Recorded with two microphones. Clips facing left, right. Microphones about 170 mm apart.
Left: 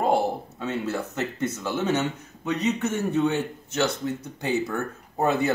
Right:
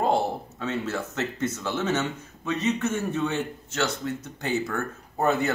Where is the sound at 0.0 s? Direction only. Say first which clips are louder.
Left 1 dB; 15° left (ahead or behind).